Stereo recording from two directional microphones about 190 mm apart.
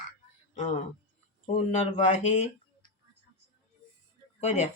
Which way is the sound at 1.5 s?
35° left (ahead or behind).